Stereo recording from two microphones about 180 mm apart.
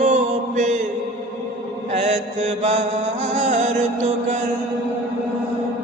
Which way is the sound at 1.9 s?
40° right (ahead or behind).